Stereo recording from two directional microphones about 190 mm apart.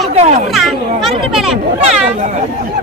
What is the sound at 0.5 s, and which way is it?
A child's voice, centre (ahead or behind).